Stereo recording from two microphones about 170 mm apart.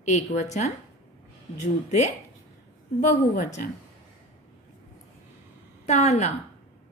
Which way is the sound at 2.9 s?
50° left (ahead or behind).